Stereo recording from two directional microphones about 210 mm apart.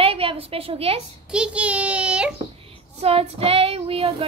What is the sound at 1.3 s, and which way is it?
A child's voice, 5° right (ahead or behind).